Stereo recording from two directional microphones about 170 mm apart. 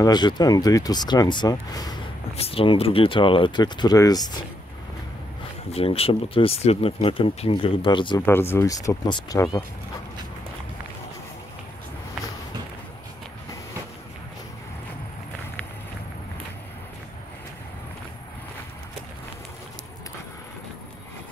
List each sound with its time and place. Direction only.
0.0 s speech: 25° left (ahead or behind)
2.3 s speech: 35° left (ahead or behind)
5.7 s speech: 35° left (ahead or behind)
8.3 s speech: 15° left (ahead or behind)